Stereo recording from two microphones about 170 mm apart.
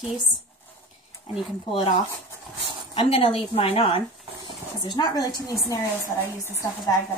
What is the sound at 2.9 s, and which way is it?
A woman's voice, 35° left (ahead or behind).